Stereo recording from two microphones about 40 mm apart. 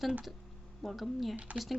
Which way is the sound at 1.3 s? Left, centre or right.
Right.